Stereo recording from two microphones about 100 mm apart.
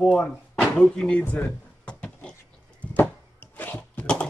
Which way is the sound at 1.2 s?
20° left (ahead or behind).